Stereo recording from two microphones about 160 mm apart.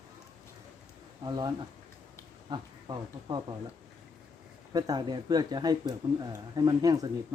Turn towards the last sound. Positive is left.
turn(degrees=-25)  # may be behind; listen again after turning